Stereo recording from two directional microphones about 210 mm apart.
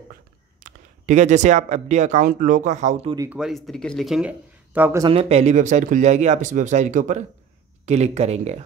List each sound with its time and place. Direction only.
0.7 s speech: 35° right (ahead or behind)
3.2 s speech: 5° right (ahead or behind)
5.0 s speech: 30° right (ahead or behind)